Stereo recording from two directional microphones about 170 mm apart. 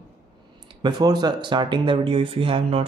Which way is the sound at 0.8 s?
25° right (ahead or behind).